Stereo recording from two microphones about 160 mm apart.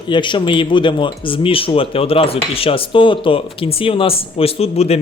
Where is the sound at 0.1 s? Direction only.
30° left (ahead or behind).